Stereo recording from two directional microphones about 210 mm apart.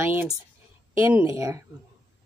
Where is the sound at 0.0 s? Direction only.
10° right (ahead or behind).